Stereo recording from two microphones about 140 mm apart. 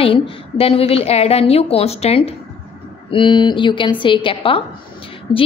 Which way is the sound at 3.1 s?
35° left (ahead or behind).